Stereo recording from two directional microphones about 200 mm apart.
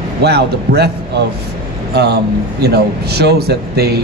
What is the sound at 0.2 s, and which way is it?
A man's voice, 55° right (ahead or behind).